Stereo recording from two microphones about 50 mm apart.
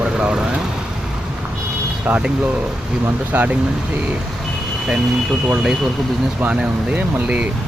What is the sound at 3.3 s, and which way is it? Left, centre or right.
Speech, right.